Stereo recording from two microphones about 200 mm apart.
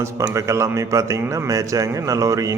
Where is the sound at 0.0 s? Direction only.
15° right (ahead or behind).